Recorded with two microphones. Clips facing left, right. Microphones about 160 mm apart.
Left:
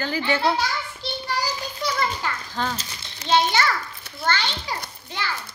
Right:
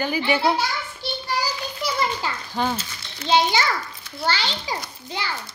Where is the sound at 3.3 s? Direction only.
15° right (ahead or behind).